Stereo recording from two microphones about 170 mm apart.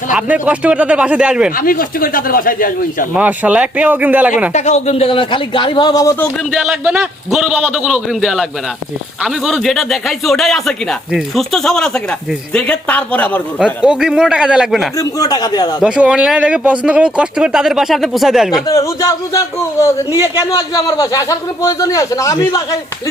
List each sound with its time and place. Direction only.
0.1 s speech: 10° right (ahead or behind)
1.5 s speech: 55° left (ahead or behind)
3.2 s speech: 10° right (ahead or behind)
4.5 s a man's voice: 40° left (ahead or behind); by 6.1 s 20° left (ahead or behind)
6.5 s speech: 5° right (ahead or behind)
13.8 s speech: 5° right (ahead or behind)
14.9 s a man's voice: 20° left (ahead or behind)
15.8 s speech: 5° right (ahead or behind)
18.7 s speech: 20° left (ahead or behind)
20.1 s speech: 15° right (ahead or behind)
20.4 s a man's voice: 20° left (ahead or behind)